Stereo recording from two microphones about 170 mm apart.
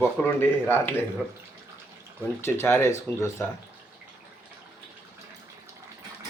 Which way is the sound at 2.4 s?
15° left (ahead or behind).